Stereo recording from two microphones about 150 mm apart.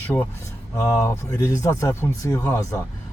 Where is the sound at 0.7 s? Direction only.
25° left (ahead or behind).